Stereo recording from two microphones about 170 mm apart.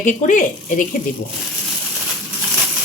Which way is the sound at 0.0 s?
50° left (ahead or behind).